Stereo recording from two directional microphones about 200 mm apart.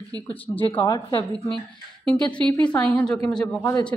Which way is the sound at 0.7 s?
20° left (ahead or behind).